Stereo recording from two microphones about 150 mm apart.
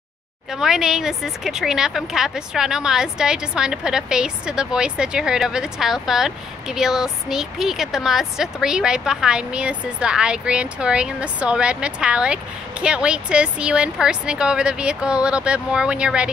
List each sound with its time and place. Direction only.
0.5 s speech: 5° right (ahead or behind)